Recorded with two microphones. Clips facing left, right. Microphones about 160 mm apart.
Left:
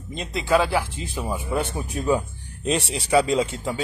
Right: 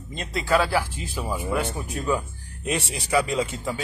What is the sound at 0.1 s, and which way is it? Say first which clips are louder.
Speech: left 2 dB; 15° left (ahead or behind).